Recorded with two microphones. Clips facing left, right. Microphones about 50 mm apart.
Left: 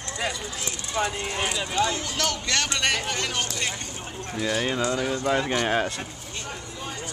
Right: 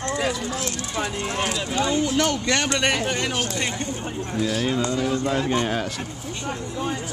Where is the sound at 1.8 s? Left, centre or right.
Centre.